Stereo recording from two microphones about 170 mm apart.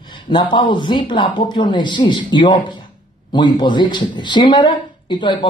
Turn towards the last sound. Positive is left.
turn(degrees=25)  # may be behind; listen again after turning